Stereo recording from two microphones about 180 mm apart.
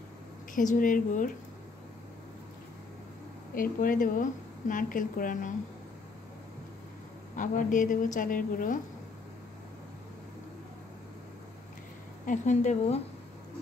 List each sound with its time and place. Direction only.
0.6 s a woman's voice: 45° left (ahead or behind)
3.5 s a woman's voice: 50° left (ahead or behind)
7.3 s a woman's voice: 45° left (ahead or behind)
12.3 s speech: 40° left (ahead or behind)